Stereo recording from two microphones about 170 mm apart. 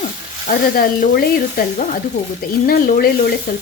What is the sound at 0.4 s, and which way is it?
Speech, 55° left (ahead or behind).